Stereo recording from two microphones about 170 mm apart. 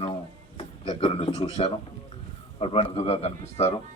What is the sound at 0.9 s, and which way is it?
Speech, 30° left (ahead or behind).